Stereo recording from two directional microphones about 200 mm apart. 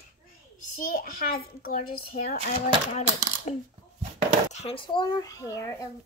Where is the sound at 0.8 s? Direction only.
45° left (ahead or behind).